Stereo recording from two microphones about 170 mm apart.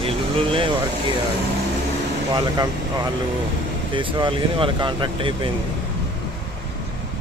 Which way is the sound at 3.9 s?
30° right (ahead or behind).